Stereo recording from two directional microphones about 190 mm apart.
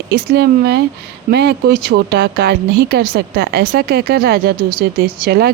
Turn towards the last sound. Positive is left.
turn(degrees=-55)  # may be behind; listen again after turning